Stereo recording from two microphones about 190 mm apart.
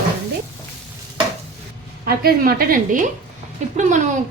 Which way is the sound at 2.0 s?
50° right (ahead or behind).